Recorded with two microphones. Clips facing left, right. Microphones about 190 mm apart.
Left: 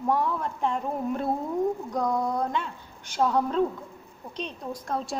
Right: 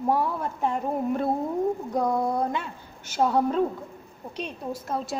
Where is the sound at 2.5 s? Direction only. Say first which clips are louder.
Even; 10° right (ahead or behind).